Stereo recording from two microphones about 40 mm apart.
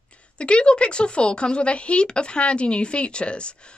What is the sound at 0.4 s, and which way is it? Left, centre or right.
Speech, left.